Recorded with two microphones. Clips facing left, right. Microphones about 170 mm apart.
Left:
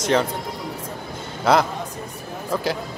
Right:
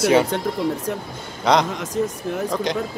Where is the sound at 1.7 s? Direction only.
90° right.